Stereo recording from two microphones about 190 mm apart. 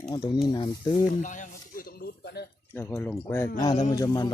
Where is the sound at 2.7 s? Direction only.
10° left (ahead or behind).